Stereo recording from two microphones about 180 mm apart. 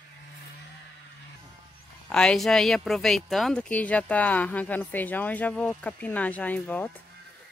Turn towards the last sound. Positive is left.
turn(degrees=10)  # may be behind; listen again after turning